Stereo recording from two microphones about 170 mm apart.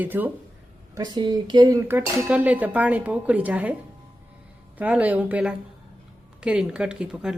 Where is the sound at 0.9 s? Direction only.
25° right (ahead or behind); by 3.7 s 10° right (ahead or behind).